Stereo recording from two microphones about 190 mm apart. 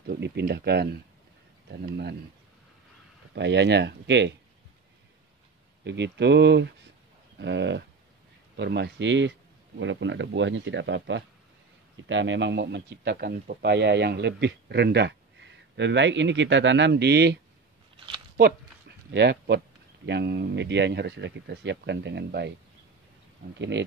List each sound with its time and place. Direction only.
0.1 s speech: 60° right (ahead or behind)
3.3 s speech: 65° right (ahead or behind)
5.9 s speech: 65° right (ahead or behind)
17.9 s a sound: 25° right (ahead or behind)
18.4 s a sound: 60° right (ahead or behind)
20.1 s speech: 65° right (ahead or behind)